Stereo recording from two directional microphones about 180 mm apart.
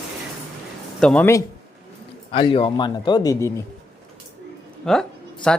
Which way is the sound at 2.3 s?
30° left (ahead or behind).